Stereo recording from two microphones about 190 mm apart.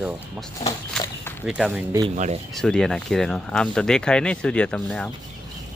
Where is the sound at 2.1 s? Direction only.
40° right (ahead or behind).